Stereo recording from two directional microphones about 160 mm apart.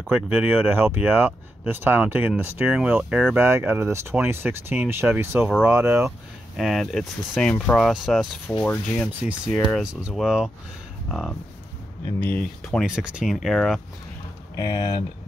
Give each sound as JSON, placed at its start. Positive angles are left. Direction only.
{"t": 0.1, "sound": "speech", "side_deg": -10}
{"t": 6.5, "sound": "speech", "side_deg": 0}
{"t": 12.8, "sound": "speech", "side_deg": -5}
{"t": 14.6, "sound": "speech", "side_deg": 35}